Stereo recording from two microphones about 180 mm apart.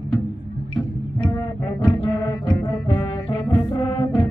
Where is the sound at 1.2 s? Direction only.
25° left (ahead or behind).